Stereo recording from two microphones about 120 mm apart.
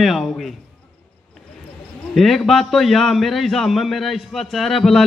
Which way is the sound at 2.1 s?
Centre (ahead or behind).